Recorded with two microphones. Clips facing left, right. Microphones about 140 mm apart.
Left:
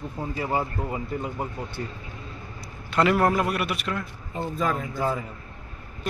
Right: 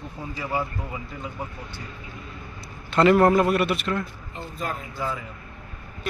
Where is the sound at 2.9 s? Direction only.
5° left (ahead or behind).